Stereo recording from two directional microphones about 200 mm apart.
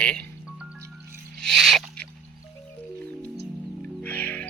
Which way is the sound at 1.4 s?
Centre (ahead or behind).